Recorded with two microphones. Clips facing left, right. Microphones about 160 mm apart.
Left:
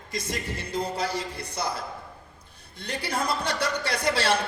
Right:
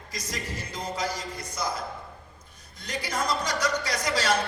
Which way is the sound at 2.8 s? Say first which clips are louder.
Left 1 dB; 60° left (ahead or behind).